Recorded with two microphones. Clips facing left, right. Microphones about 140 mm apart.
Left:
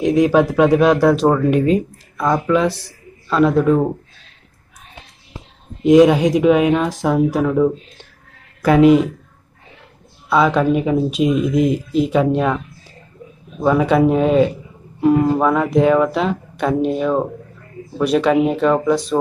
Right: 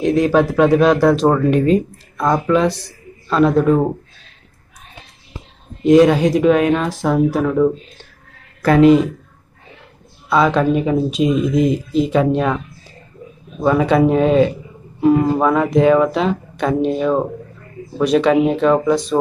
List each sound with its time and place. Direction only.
0.0 s speech: 10° left (ahead or behind); by 3.9 s 5° right (ahead or behind)
5.9 s speech: 10° left (ahead or behind)
10.3 s speech: 5° left (ahead or behind)
13.6 s speech: 5° left (ahead or behind)